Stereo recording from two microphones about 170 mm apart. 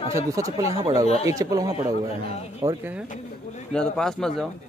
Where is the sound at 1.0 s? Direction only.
35° left (ahead or behind).